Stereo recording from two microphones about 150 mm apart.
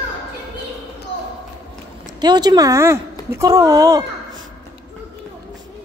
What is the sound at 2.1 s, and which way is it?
Speech, 30° right (ahead or behind).